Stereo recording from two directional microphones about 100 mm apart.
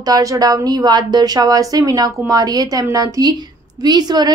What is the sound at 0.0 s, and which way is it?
A woman's voice, 35° right (ahead or behind).